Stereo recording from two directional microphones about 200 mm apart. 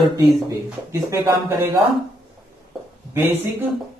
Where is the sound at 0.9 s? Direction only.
15° right (ahead or behind).